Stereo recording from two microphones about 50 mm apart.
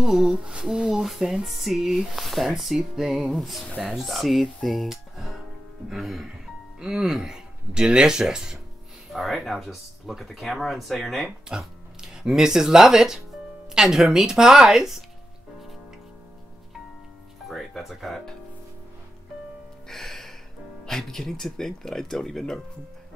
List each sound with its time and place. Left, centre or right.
0.0 s speech: centre
0.4 s speech: centre
4.6 s a sound: centre
5.9 s speech: centre
9.1 s speech: centre
11.4 s speech: centre
17.5 s speech: centre
19.9 s music: centre
20.8 s speech: centre